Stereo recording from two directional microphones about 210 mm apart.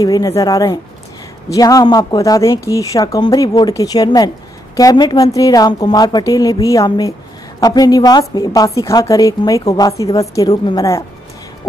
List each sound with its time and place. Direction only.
0.0 s a woman's voice: 15° left (ahead or behind)